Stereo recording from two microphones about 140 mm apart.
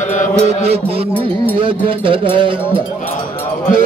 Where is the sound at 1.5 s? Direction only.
40° right (ahead or behind).